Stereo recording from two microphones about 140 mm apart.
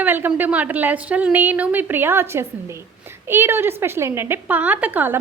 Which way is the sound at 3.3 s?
15° right (ahead or behind).